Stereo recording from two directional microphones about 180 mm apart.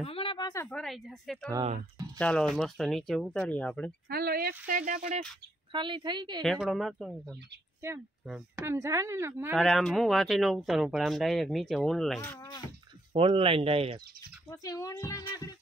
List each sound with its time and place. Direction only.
0.0 s a sound: 30° left (ahead or behind)
0.7 s speech: 5° left (ahead or behind)
4.1 s speech: 55° right (ahead or behind)
5.7 s speech: 25° right (ahead or behind)
6.4 s speech: centre (ahead or behind)
8.5 s a woman's voice: 15° right (ahead or behind)
9.6 s speech: centre (ahead or behind)
13.1 s speech: 30° right (ahead or behind)
14.5 s speech: 20° left (ahead or behind)